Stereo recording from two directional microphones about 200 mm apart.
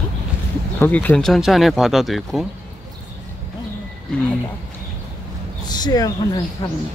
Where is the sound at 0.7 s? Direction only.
10° left (ahead or behind).